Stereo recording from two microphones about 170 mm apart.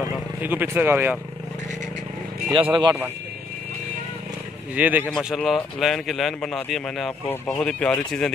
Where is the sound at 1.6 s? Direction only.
45° right (ahead or behind).